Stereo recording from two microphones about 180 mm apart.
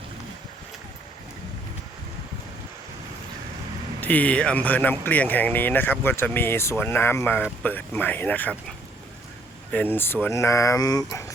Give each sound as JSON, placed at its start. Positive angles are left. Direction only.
{"t": 4.0, "sound": "speech", "side_deg": 10}
{"t": 9.7, "sound": "speech", "side_deg": 10}